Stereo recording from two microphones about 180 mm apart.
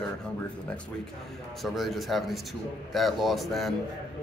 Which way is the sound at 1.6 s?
Centre (ahead or behind).